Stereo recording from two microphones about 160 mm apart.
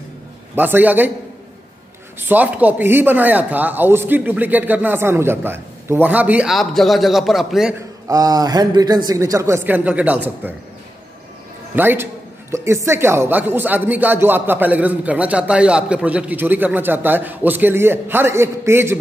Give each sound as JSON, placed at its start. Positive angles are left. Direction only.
{"t": 0.6, "sound": "a man's voice", "side_deg": -10}
{"t": 2.1, "sound": "a man's voice", "side_deg": -10}
{"t": 8.1, "sound": "a man's voice", "side_deg": -20}
{"t": 11.7, "sound": "a man's voice", "side_deg": -10}